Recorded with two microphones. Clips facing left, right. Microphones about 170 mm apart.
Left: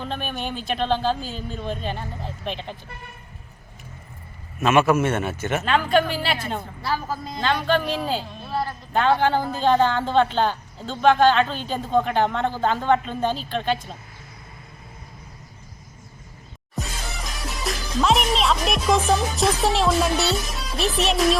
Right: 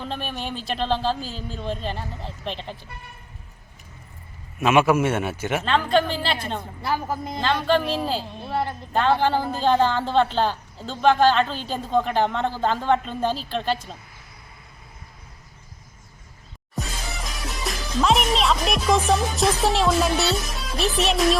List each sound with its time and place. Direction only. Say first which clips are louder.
0.0 s speech: left 1 dB; centre (ahead or behind)
4.6 s a man's voice: even; 10° right (ahead or behind)
5.6 s speech: left 1 dB; 5° left (ahead or behind)
6.8 s speech: right 2 dB; 20° right (ahead or behind)
7.3 s speech: right 1 dB; centre (ahead or behind)
17.6 s speech: even; centre (ahead or behind)